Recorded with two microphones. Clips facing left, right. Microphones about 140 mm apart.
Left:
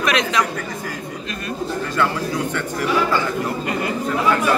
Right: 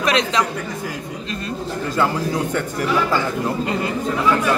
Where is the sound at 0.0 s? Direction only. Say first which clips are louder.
Right 1 dB; 30° right (ahead or behind).